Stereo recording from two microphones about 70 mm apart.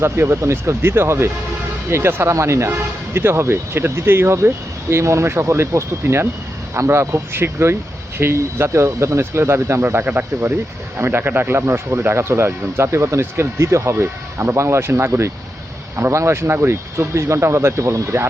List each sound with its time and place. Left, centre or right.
0.0 s speech: right